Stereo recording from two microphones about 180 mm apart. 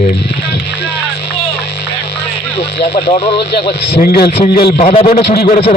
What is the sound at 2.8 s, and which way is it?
Speech, 35° left (ahead or behind).